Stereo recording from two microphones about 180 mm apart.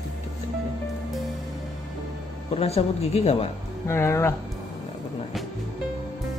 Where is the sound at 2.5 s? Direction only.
35° left (ahead or behind).